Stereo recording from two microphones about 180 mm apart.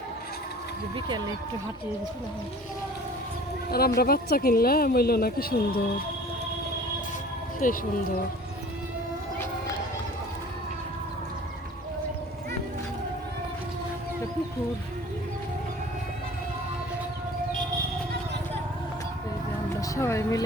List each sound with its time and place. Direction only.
0.9 s speech: 25° right (ahead or behind)
3.7 s speech: 60° left (ahead or behind)
7.6 s speech: 50° left (ahead or behind)
20.0 s speech: 15° left (ahead or behind)